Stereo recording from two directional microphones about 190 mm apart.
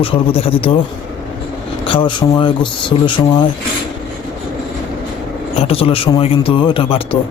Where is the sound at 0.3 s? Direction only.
30° left (ahead or behind).